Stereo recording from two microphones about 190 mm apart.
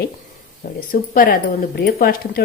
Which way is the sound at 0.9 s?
50° left (ahead or behind).